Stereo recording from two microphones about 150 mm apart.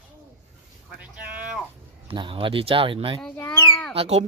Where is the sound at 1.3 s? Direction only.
10° right (ahead or behind).